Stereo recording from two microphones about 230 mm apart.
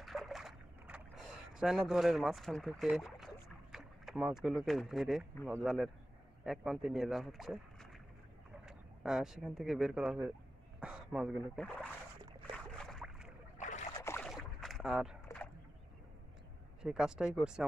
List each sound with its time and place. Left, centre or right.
0.0 s rowboat: centre
3.7 s speech: centre
12.5 s boat: centre
13.6 s boat: left
14.0 s boat: centre
14.3 s rowboat: centre
15.2 s a sound: centre
16.8 s speech: centre